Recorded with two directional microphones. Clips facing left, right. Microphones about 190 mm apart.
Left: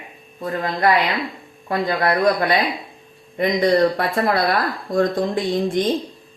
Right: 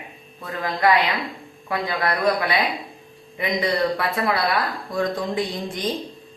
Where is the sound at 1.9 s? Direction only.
40° left (ahead or behind).